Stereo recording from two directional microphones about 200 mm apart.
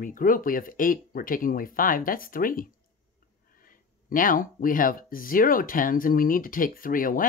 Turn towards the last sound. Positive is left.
turn(degrees=45)  # may be behind; listen again after turning